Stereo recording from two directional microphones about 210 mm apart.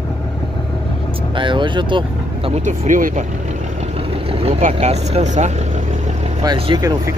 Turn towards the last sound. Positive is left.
turn(degrees=-20)  # may be behind; listen again after turning